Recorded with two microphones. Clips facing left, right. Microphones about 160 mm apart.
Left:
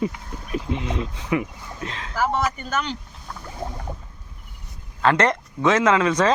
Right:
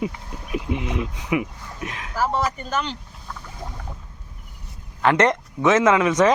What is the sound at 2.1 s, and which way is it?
Speech, centre (ahead or behind).